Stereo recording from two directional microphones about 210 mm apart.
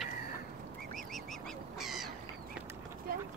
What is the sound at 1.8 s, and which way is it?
Duck, centre (ahead or behind).